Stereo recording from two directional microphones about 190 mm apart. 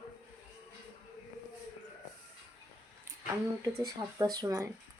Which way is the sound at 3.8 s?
20° right (ahead or behind).